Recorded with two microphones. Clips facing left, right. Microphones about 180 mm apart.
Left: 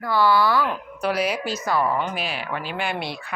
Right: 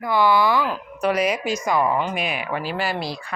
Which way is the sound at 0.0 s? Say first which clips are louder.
Right 1 dB; 15° right (ahead or behind).